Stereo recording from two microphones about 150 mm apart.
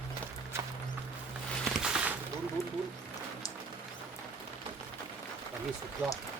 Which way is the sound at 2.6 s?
20° left (ahead or behind).